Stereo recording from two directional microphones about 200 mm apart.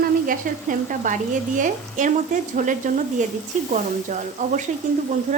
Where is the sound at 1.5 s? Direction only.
40° right (ahead or behind).